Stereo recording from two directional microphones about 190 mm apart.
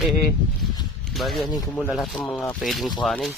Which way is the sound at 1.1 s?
Centre (ahead or behind).